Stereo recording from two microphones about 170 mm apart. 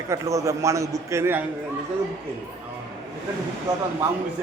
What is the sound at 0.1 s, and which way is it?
A man's voice, 20° right (ahead or behind).